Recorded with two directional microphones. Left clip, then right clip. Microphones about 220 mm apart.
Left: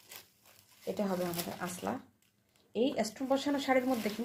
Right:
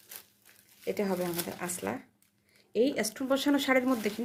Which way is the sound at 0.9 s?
40° right (ahead or behind).